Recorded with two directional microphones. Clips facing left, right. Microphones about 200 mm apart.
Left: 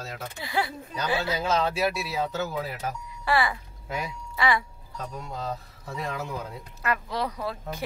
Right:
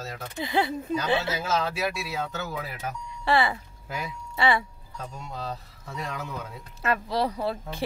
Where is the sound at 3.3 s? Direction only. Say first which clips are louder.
Right 2 dB; 25° right (ahead or behind).